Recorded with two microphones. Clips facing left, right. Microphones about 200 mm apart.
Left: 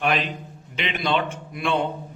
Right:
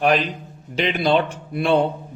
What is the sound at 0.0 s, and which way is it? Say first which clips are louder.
A man's voice: right 5 dB; 40° right (ahead or behind).